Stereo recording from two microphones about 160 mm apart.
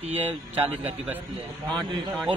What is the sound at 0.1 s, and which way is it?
Speech, 40° right (ahead or behind).